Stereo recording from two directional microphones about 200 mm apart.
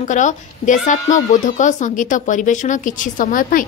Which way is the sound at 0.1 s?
40° left (ahead or behind).